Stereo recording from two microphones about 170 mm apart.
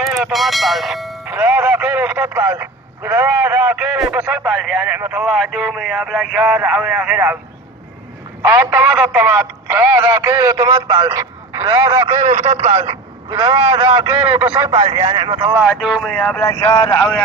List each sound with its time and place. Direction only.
0.0 s speech: centre (ahead or behind)
8.4 s speech: 15° right (ahead or behind)
12.2 s a man's voice: 45° right (ahead or behind); by 15.6 s 20° right (ahead or behind)
15.6 s speech: centre (ahead or behind)
16.4 s speech: 20° left (ahead or behind)